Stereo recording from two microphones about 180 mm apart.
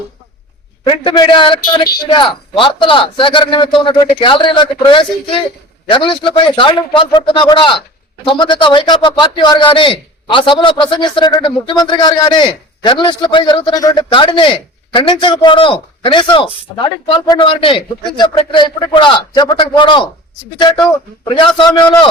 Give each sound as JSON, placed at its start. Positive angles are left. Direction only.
{"t": 0.9, "sound": "a man's voice", "side_deg": 25}
{"t": 21.2, "sound": "a man's voice", "side_deg": 25}